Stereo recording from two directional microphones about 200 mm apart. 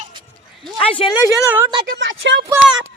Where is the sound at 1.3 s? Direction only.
10° right (ahead or behind).